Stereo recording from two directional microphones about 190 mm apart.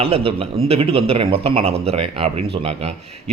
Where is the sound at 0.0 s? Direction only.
30° right (ahead or behind).